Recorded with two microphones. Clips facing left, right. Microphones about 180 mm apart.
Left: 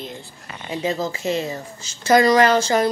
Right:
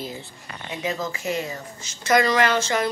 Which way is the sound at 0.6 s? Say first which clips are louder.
Left 4 dB; 30° left (ahead or behind).